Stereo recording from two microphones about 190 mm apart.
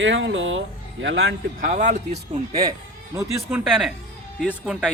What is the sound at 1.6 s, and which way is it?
Speech, 40° right (ahead or behind).